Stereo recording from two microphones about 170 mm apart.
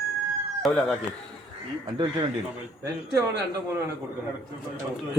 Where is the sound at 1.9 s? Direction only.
25° right (ahead or behind).